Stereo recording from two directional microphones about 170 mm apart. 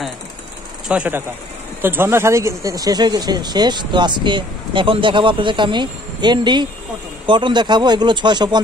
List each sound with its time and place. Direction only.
0.8 s speech: 10° right (ahead or behind); by 8.5 s 25° right (ahead or behind)